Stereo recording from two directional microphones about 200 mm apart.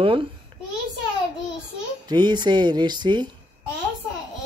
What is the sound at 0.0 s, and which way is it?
Speech, 25° right (ahead or behind).